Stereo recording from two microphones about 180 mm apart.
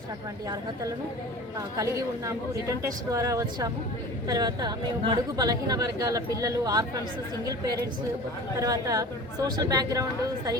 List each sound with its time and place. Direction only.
1.5 s speech: 20° right (ahead or behind)